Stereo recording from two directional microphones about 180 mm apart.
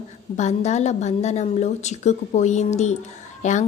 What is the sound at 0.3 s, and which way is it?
Speech, 40° left (ahead or behind).